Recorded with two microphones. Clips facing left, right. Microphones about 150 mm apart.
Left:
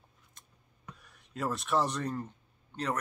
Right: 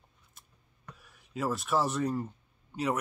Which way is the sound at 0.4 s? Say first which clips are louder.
Right 1 dB; 5° right (ahead or behind).